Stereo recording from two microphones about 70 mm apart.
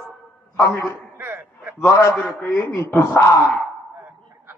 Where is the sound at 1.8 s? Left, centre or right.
Left.